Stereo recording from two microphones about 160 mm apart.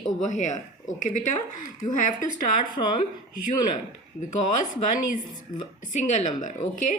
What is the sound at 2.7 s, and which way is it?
Speech, 30° left (ahead or behind).